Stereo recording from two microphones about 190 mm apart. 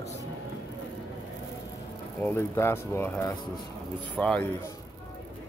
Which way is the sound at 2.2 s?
10° left (ahead or behind).